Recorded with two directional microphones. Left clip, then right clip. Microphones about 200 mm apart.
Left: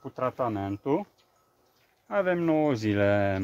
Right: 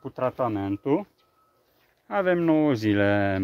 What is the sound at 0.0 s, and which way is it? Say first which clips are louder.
Speech: right 3 dB; 55° right (ahead or behind).